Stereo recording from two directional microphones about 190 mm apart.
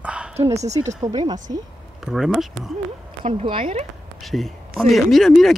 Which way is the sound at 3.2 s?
25° right (ahead or behind).